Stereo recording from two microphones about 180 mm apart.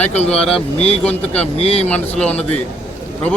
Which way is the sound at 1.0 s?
5° left (ahead or behind).